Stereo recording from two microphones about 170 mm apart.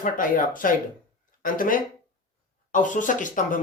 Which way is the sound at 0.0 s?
50° left (ahead or behind).